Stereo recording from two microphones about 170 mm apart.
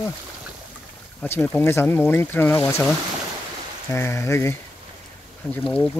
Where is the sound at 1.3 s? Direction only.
10° left (ahead or behind).